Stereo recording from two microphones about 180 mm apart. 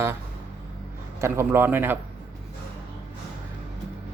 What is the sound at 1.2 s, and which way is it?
Speech, 15° right (ahead or behind).